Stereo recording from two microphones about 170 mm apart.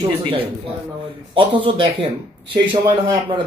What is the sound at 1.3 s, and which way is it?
Speech, 30° right (ahead or behind).